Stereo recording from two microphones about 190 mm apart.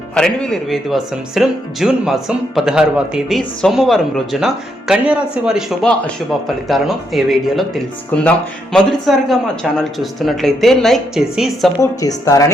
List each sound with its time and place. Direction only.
0.1 s speech: 5° left (ahead or behind)
11.8 s speech: 15° left (ahead or behind)